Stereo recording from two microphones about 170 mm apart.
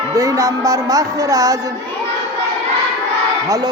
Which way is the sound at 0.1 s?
20° right (ahead or behind).